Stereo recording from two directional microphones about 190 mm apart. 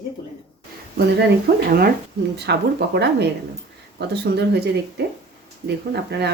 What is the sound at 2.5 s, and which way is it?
Speech, 60° right (ahead or behind).